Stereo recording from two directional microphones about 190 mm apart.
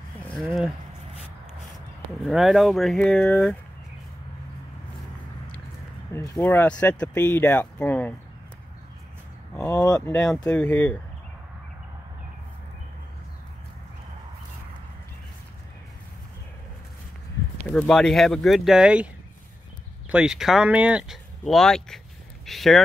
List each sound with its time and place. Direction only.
2.2 s speech: centre (ahead or behind)
6.1 s speech: 15° left (ahead or behind)
9.7 s speech: 20° left (ahead or behind)
9.9 s speech: 5° left (ahead or behind)
17.7 s speech: 5° left (ahead or behind)
20.1 s speech: 5° right (ahead or behind)